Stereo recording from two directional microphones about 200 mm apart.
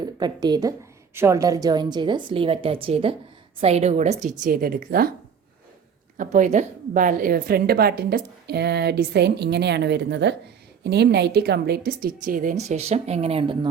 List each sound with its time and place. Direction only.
0.0 s a woman's voice: 20° right (ahead or behind); by 5.1 s 45° right (ahead or behind)
6.1 s a woman's voice: 40° right (ahead or behind)